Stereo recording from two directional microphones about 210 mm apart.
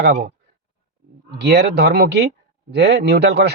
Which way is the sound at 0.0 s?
45° right (ahead or behind).